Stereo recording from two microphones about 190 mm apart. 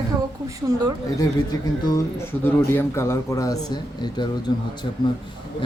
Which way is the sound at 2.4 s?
10° left (ahead or behind).